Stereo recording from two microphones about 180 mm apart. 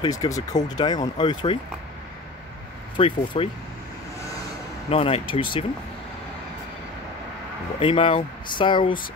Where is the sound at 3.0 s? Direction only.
30° left (ahead or behind).